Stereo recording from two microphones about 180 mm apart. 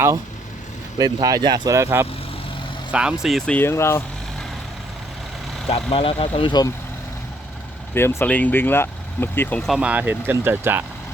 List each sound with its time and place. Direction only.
0.9 s speech: 20° right (ahead or behind); by 4.0 s 15° left (ahead or behind)
5.6 s speech: 30° left (ahead or behind)
7.9 s speech: 10° left (ahead or behind); by 10.8 s 10° right (ahead or behind)